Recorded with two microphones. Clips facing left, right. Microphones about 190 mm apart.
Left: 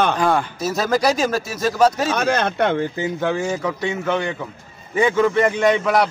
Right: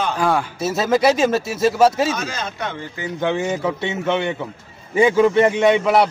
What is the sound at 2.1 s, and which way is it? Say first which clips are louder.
Speech: left 7 dB; 65° left (ahead or behind).